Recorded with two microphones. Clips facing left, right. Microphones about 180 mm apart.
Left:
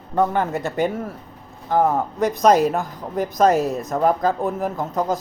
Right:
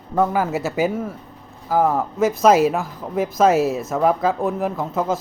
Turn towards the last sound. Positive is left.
turn(degrees=0)  # may be behind; listen again after turning